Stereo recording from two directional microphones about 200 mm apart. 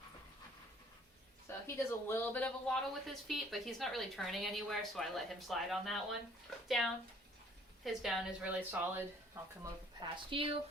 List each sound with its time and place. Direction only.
1.5 s speech: 15° left (ahead or behind)
8.7 s speech: 10° right (ahead or behind)
10.2 s speech: 25° right (ahead or behind)